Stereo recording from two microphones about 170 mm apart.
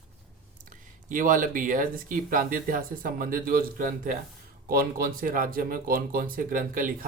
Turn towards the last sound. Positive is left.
turn(degrees=-50)  # may be behind; listen again after turning